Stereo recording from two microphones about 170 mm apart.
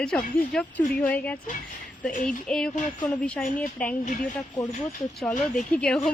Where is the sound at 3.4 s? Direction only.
55° left (ahead or behind).